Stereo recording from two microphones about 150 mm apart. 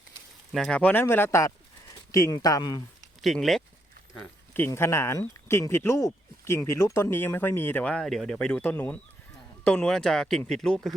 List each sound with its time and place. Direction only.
0.5 s speech: 5° left (ahead or behind); by 2.8 s 25° left (ahead or behind)
3.2 s speech: centre (ahead or behind)
4.2 s speech: 10° left (ahead or behind)